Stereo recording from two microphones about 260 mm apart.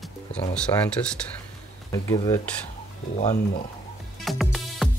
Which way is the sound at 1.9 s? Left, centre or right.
Centre.